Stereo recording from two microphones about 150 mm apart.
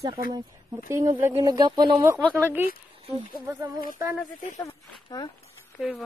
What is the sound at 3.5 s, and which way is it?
Speech, 15° right (ahead or behind).